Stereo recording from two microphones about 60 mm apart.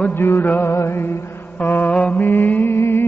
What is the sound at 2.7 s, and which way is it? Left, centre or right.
Music, left.